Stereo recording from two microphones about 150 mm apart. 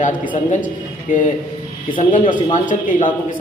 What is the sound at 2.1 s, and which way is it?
A man's voice, 60° left (ahead or behind).